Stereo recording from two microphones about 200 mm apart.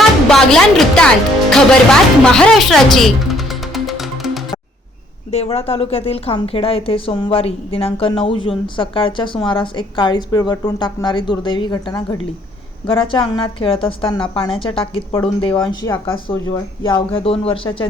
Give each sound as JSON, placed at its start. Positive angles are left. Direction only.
{"t": 0.3, "sound": "music", "side_deg": 5}
{"t": 5.3, "sound": "a woman's voice", "side_deg": 30}